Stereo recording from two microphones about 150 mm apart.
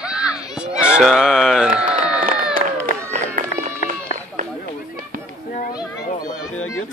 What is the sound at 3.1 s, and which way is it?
Run, 55° right (ahead or behind).